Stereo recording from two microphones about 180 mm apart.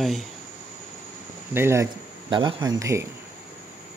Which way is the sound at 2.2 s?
25° right (ahead or behind).